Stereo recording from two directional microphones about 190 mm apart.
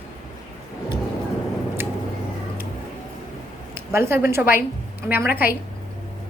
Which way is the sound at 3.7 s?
10° right (ahead or behind).